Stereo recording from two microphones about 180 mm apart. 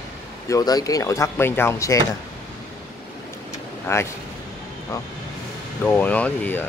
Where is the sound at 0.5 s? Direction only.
20° left (ahead or behind).